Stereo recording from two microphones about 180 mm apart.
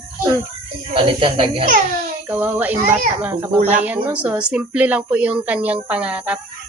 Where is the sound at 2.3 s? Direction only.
10° right (ahead or behind).